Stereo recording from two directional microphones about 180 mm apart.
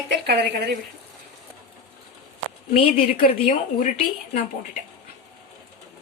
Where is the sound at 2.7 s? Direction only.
30° left (ahead or behind).